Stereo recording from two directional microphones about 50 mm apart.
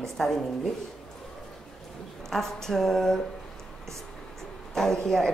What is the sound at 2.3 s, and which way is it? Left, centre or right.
Speech, centre.